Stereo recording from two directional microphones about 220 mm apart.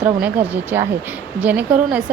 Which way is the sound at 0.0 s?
5° right (ahead or behind).